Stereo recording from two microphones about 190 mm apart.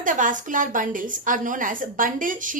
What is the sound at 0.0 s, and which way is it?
A woman's voice, 45° right (ahead or behind).